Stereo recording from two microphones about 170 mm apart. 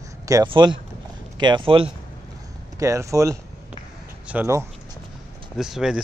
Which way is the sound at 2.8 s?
20° right (ahead or behind).